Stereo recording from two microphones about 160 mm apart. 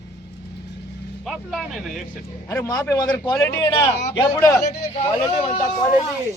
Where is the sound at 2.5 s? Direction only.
20° left (ahead or behind).